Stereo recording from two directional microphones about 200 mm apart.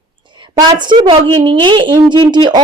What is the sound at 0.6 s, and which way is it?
A woman's voice, 20° right (ahead or behind).